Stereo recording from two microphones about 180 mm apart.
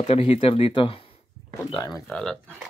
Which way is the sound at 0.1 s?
35° left (ahead or behind).